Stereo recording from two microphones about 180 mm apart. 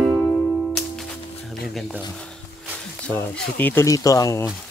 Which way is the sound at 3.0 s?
10° left (ahead or behind).